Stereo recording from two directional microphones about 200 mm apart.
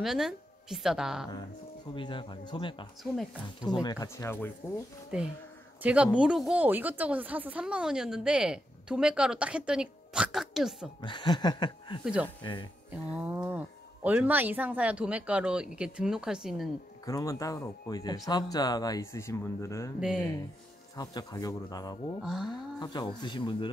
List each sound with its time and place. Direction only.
0.0 s a woman's voice: centre (ahead or behind)
2.0 s speech: 25° left (ahead or behind)
5.1 s speech: 5° right (ahead or behind)
11.0 s speech: 20° left (ahead or behind)
12.0 s speech: 5° right (ahead or behind)
17.0 s speech: 15° left (ahead or behind)
20.9 s speech: 20° left (ahead or behind)
22.2 s speech: centre (ahead or behind)
22.8 s speech: 20° left (ahead or behind)